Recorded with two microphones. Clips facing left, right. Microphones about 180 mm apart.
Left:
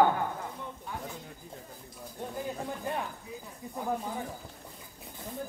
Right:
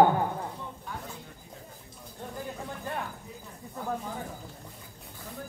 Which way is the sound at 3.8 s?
15° left (ahead or behind).